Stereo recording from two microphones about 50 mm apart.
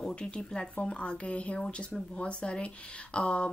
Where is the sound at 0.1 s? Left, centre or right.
Left.